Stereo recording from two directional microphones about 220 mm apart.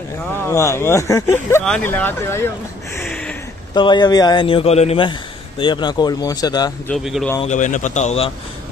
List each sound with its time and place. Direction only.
0.4 s speech: 10° left (ahead or behind)
3.0 s a sound: 5° left (ahead or behind)
3.7 s speech: 20° left (ahead or behind)
6.9 s speech: centre (ahead or behind)
7.4 s speech: 35° left (ahead or behind)